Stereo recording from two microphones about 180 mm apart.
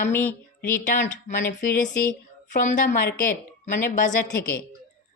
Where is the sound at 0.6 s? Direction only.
45° left (ahead or behind).